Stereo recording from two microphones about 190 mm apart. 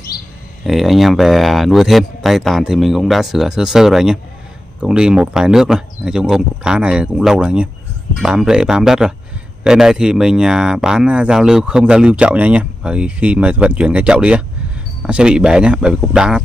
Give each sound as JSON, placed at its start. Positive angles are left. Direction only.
{"t": 0.7, "sound": "speech", "side_deg": 0}